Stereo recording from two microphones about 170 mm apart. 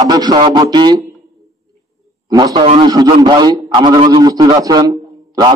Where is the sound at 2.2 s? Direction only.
25° right (ahead or behind).